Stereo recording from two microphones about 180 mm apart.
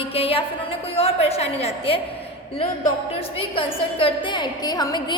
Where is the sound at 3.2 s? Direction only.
30° left (ahead or behind).